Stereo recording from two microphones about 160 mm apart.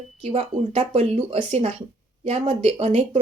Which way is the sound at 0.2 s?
40° right (ahead or behind).